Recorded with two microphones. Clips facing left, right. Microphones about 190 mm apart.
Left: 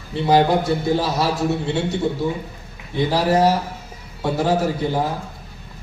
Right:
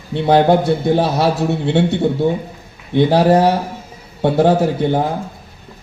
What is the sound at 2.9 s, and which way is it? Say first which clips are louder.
A man's voice: right 6 dB; 60° right (ahead or behind).